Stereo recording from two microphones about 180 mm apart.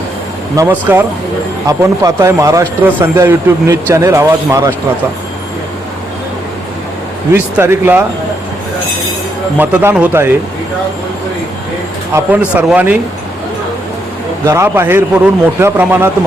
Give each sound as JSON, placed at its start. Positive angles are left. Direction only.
{"t": 0.5, "sound": "speech", "side_deg": -15}
{"t": 7.3, "sound": "speech", "side_deg": -15}
{"t": 9.6, "sound": "speech", "side_deg": -10}
{"t": 12.1, "sound": "speech", "side_deg": -10}
{"t": 14.4, "sound": "speech", "side_deg": -15}